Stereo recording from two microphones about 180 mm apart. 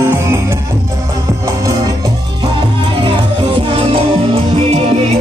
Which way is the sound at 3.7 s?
30° right (ahead or behind).